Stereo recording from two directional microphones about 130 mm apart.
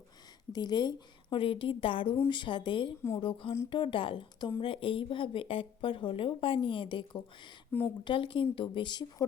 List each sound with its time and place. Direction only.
0.5 s speech: 30° left (ahead or behind)
7.7 s speech: 15° left (ahead or behind)
8.0 s speech: 40° left (ahead or behind)